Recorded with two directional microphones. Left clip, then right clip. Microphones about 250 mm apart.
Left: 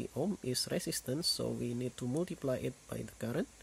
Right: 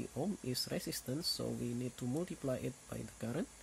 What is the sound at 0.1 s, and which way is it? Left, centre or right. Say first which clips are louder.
Speech: left 4 dB; centre.